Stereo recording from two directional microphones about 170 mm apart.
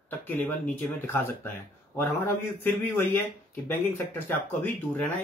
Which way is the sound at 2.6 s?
10° left (ahead or behind).